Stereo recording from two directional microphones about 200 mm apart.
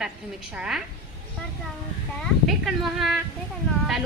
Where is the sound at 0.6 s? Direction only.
5° right (ahead or behind).